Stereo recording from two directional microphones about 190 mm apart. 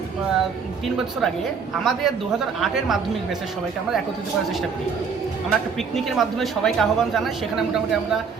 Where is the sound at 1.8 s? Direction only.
Centre (ahead or behind).